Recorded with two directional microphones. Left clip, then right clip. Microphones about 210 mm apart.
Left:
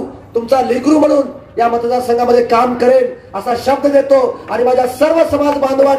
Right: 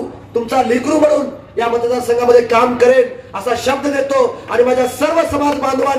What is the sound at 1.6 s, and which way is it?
A man's voice, 50° left (ahead or behind).